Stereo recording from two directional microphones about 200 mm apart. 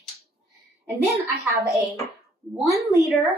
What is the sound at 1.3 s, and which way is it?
A woman's voice, 15° right (ahead or behind).